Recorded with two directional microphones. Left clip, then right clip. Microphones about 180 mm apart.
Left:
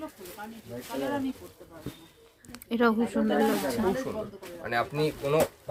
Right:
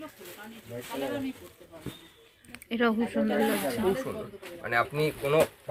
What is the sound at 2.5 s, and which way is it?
Speech, 15° left (ahead or behind).